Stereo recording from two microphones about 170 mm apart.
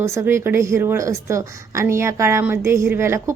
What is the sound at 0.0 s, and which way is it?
A woman's voice, 15° right (ahead or behind).